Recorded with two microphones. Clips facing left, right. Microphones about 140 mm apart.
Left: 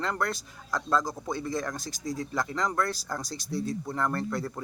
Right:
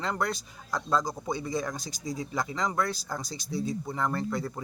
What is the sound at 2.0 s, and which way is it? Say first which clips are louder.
A man's voice: left 1 dB; 10° right (ahead or behind).